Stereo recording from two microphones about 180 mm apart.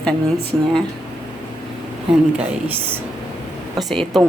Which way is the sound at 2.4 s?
10° right (ahead or behind).